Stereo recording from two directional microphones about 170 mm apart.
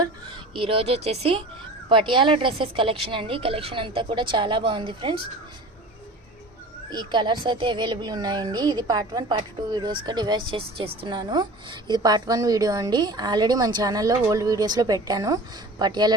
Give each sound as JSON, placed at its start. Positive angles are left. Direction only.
{"t": 0.5, "sound": "a woman's voice", "side_deg": -30}
{"t": 6.9, "sound": "speech", "side_deg": -25}